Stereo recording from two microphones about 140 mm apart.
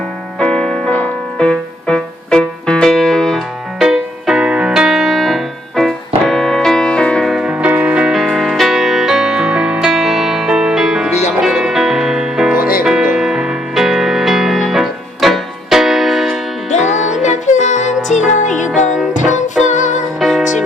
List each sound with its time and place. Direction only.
0.3 s music: 5° left (ahead or behind)
12.5 s music: 90° left
12.8 s music: 5° right (ahead or behind)
16.6 s music: 55° left (ahead or behind)
20.1 s music: centre (ahead or behind)